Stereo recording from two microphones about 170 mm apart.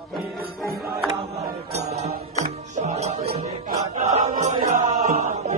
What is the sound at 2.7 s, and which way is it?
Music, 45° right (ahead or behind).